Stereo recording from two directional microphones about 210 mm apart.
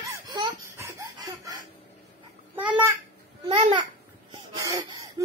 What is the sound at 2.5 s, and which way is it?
Babbling, 5° right (ahead or behind).